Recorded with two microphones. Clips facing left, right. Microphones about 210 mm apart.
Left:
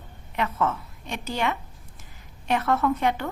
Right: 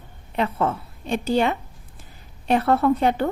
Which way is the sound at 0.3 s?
30° right (ahead or behind).